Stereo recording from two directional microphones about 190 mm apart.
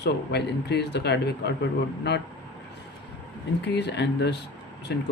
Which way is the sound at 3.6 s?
65° left (ahead or behind).